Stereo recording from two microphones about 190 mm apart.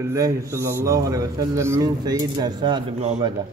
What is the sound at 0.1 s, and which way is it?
A man's voice, 15° right (ahead or behind).